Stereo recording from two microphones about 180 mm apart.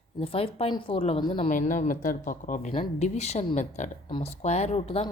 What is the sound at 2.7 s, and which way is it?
A woman's voice, 35° left (ahead or behind).